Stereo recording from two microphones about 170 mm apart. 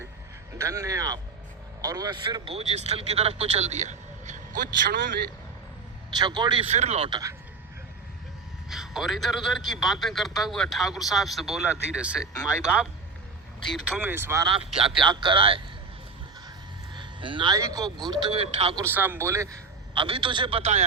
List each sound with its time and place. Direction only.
0.6 s speech: 20° right (ahead or behind); by 5.1 s 55° right (ahead or behind)
6.1 s speech: 25° right (ahead or behind)
8.7 s a man's voice: centre (ahead or behind)
13.7 s speech: centre (ahead or behind)
14.4 s speech: 30° right (ahead or behind)
16.9 s speech: 30° right (ahead or behind)
18.8 s speech: 10° right (ahead or behind)
19.9 s speech: 30° right (ahead or behind)